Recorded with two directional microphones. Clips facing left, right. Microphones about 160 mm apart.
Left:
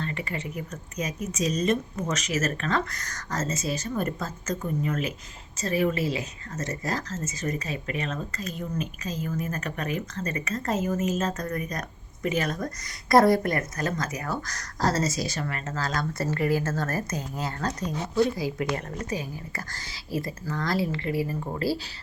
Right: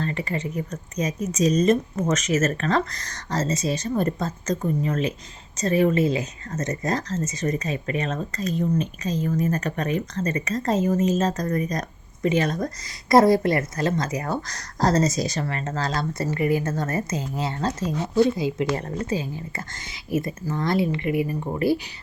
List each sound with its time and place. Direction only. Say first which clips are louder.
0.0 s speech: right 5 dB; 35° right (ahead or behind)
13.1 s speech: right 3 dB; 20° right (ahead or behind)
16.3 s speech: right 3 dB; 15° right (ahead or behind)